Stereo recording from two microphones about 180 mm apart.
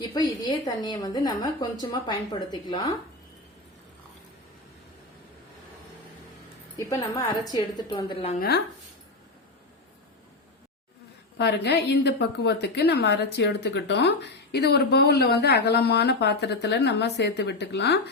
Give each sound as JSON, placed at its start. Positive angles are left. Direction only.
{"t": 0.0, "sound": "a woman's voice", "side_deg": 25}
{"t": 6.7, "sound": "a woman's voice", "side_deg": 15}
{"t": 8.4, "sound": "speech", "side_deg": 65}
{"t": 11.3, "sound": "a woman's voice", "side_deg": 70}